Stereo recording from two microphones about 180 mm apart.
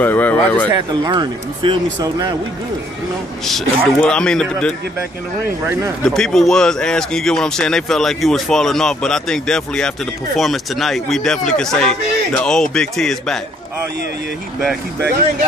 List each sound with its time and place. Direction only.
0.0 s speech: 10° left (ahead or behind)
0.7 s speech: 25° right (ahead or behind)
3.4 s speech: 5° left (ahead or behind)
6.0 s speech: 5° left (ahead or behind)